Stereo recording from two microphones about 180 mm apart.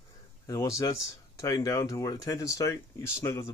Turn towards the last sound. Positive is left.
turn(degrees=15)  # may be behind; listen again after turning